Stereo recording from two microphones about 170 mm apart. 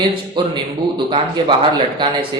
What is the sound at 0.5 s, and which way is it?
Speech, 30° right (ahead or behind).